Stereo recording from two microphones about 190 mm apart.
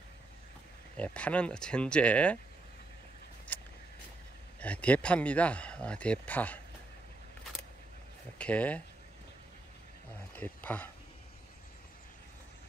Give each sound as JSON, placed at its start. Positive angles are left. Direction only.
{"t": 0.9, "sound": "speech", "side_deg": 5}
{"t": 3.5, "sound": "a sound", "side_deg": 10}
{"t": 4.6, "sound": "speech", "side_deg": 5}
{"t": 8.4, "sound": "speech", "side_deg": 5}
{"t": 10.3, "sound": "speech", "side_deg": 10}